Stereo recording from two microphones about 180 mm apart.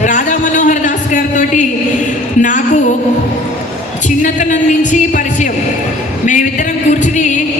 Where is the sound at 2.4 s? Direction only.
45° left (ahead or behind).